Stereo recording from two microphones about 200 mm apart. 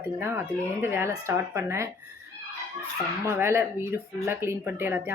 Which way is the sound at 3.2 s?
10° right (ahead or behind).